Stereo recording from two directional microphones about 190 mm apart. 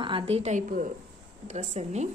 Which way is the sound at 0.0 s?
25° right (ahead or behind).